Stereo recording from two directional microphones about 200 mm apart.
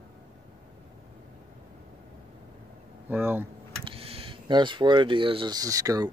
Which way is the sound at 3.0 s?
10° right (ahead or behind).